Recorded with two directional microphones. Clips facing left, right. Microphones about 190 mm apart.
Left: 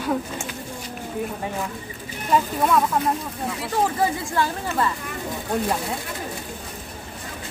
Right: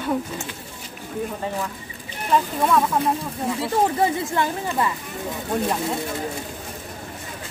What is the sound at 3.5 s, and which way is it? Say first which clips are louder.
Speech: right 2 dB; 25° right (ahead or behind).